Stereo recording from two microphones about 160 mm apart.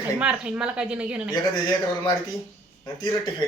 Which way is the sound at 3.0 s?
25° left (ahead or behind).